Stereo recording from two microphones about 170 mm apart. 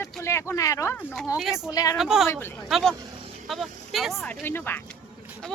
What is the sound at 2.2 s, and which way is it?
Speech, 15° left (ahead or behind).